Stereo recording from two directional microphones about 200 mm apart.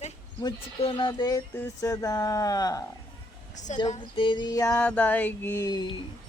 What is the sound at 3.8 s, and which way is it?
Speech, 30° left (ahead or behind).